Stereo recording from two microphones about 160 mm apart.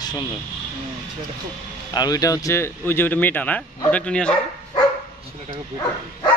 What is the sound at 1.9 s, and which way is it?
Speech, 25° left (ahead or behind).